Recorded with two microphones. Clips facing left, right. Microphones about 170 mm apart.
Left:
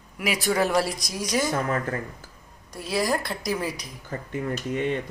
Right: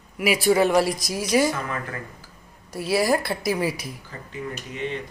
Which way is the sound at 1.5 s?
40° left (ahead or behind).